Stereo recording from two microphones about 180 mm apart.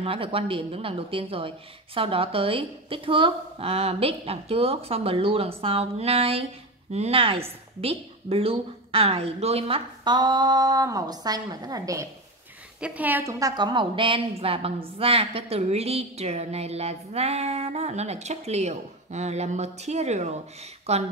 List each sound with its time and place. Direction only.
0.0 s a woman's voice: 30° right (ahead or behind)